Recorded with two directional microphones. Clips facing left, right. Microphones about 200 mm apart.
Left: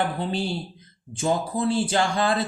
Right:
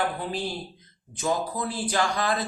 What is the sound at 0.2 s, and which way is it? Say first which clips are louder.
A man's voice: left 4 dB; 25° left (ahead or behind).